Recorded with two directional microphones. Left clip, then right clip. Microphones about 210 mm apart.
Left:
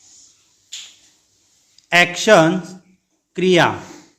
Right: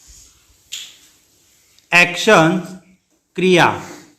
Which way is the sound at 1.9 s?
20° left (ahead or behind).